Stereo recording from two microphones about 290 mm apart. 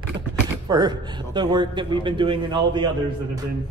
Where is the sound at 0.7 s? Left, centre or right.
Centre.